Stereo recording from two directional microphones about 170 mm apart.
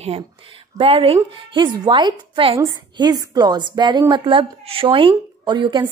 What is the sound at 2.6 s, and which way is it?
A woman's voice, 20° right (ahead or behind).